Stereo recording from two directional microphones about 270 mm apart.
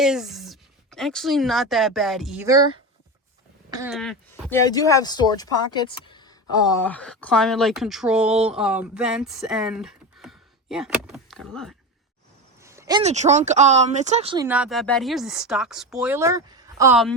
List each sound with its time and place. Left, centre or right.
0.0 s speech: centre
3.8 s speech: centre
4.6 s speech: centre
6.8 s speech: centre
12.6 s a sound: centre
13.0 s speech: right
14.4 s speech: centre